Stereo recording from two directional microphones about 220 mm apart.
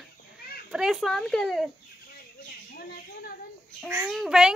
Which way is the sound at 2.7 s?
45° left (ahead or behind).